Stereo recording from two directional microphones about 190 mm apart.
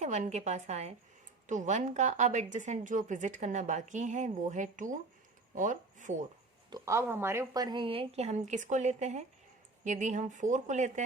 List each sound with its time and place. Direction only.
0.0 s a woman's voice: 35° right (ahead or behind)
6.7 s a woman's voice: 20° right (ahead or behind); by 11.0 s 40° right (ahead or behind)